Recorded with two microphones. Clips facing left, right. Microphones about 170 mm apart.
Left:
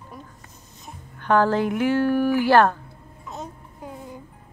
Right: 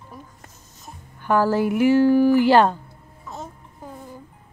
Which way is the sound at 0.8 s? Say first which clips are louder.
Left 1 dB; 5° right (ahead or behind).